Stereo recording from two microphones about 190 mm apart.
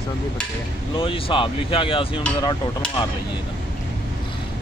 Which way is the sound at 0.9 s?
30° left (ahead or behind).